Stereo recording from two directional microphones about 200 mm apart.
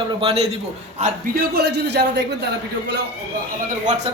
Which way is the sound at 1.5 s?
55° right (ahead or behind).